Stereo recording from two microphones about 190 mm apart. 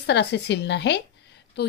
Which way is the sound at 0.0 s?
65° left (ahead or behind).